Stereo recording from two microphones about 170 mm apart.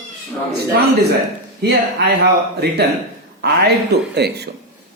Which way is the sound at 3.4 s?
70° right (ahead or behind).